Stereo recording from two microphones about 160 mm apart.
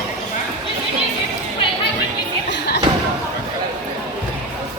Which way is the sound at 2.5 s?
90° left.